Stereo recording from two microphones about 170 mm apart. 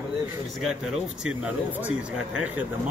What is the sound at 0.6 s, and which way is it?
Speech, 5° right (ahead or behind).